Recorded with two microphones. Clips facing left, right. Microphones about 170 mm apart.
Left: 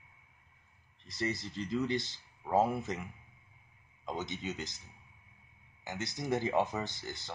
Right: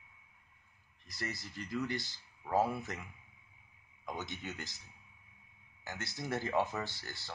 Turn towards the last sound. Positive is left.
turn(degrees=20)  # may be behind; listen again after turning